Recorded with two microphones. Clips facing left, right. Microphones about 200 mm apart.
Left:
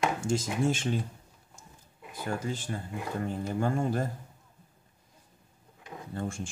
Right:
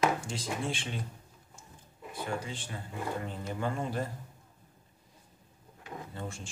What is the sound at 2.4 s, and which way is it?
Speech, 40° left (ahead or behind).